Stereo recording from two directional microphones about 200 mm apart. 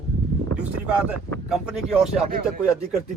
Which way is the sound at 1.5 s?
5° right (ahead or behind).